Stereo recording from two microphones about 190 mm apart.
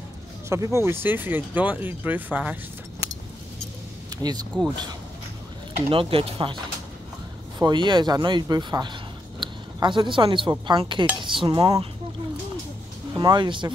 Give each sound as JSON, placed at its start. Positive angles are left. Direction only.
{"t": 0.5, "sound": "speech", "side_deg": -15}
{"t": 4.2, "sound": "speech", "side_deg": -20}
{"t": 5.9, "sound": "speech", "side_deg": -30}
{"t": 9.4, "sound": "a sound", "side_deg": -25}
{"t": 10.5, "sound": "speech", "side_deg": -25}
{"t": 13.1, "sound": "speech", "side_deg": -20}